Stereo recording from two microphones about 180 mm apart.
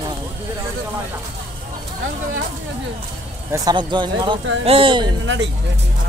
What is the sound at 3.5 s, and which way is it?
Speech, 25° right (ahead or behind).